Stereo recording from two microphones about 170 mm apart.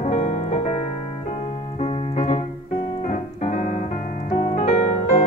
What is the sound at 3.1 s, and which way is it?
Piano, 45° left (ahead or behind).